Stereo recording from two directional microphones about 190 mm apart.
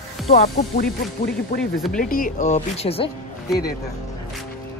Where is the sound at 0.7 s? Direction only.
55° left (ahead or behind).